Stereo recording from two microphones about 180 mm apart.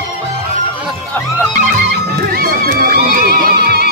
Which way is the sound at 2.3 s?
55° right (ahead or behind).